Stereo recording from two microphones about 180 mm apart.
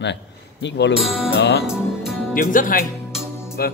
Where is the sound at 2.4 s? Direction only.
50° left (ahead or behind).